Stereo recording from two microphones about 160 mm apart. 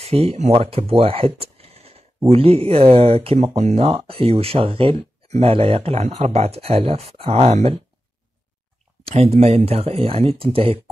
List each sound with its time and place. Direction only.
0.0 s speech: 40° right (ahead or behind)
3.8 s speech: 35° right (ahead or behind)
9.0 s speech: 40° right (ahead or behind)